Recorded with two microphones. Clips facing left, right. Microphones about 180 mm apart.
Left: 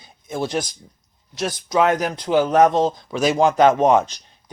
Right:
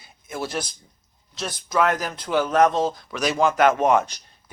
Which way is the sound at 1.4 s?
20° left (ahead or behind).